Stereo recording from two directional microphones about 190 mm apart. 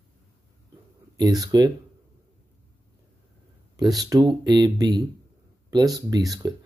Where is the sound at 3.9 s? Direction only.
20° right (ahead or behind).